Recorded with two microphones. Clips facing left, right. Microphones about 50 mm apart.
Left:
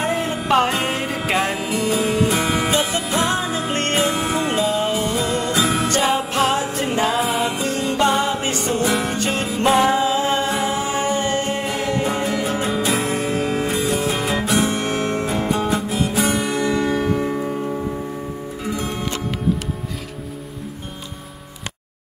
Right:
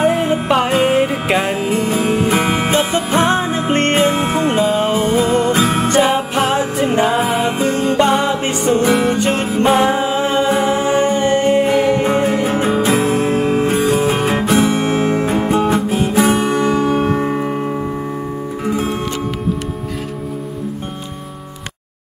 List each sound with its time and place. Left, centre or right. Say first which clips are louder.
0.0 s music: right 7 dB; right
0.8 s music: right 8 dB; centre
1.6 s music: right 4 dB; right
5.9 s music: right 5 dB; right
8.5 s music: right 6 dB; centre
9.3 s music: right 6 dB; right
9.7 s music: right 2 dB; centre
9.9 s music: right 3 dB; right
13.7 s music: right 6 dB; right
14.7 s guitar: right 6 dB; centre; by 17.7 s right
18.6 s music: right 7 dB; right